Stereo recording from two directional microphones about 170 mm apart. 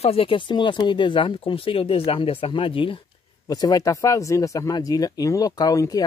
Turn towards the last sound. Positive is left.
turn(degrees=20)  # may be behind; listen again after turning